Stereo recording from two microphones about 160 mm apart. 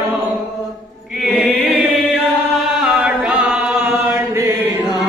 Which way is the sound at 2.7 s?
5° right (ahead or behind).